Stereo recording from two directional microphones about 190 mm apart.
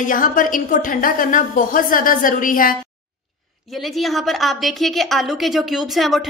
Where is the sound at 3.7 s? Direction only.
Centre (ahead or behind).